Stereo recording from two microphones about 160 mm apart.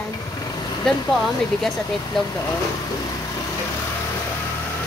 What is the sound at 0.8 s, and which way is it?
Speech, centre (ahead or behind).